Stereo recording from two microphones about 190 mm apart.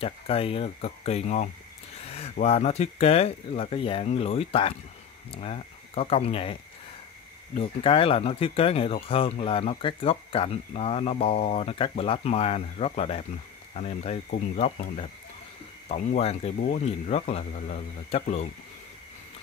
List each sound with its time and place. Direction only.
0.0 s speech: 30° left (ahead or behind)
2.0 s a sound: 30° left (ahead or behind)
2.3 s speech: 35° left (ahead or behind)